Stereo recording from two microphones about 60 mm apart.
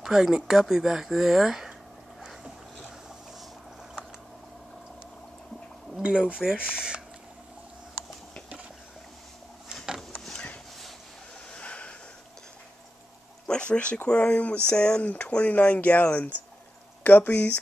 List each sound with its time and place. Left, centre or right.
0.0 s speech: centre
6.0 s speech: centre
11.5 s a sound: centre
13.5 s speech: centre